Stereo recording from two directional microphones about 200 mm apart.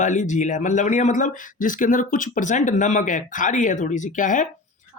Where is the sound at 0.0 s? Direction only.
40° left (ahead or behind).